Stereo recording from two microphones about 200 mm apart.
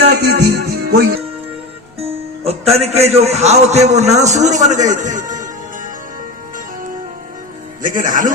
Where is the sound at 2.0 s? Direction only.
30° right (ahead or behind).